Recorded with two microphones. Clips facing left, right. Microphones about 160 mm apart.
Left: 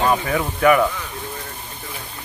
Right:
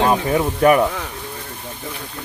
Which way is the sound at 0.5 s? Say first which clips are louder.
Right 1 dB; 40° right (ahead or behind).